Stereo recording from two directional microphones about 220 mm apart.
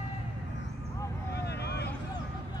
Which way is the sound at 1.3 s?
50° left (ahead or behind).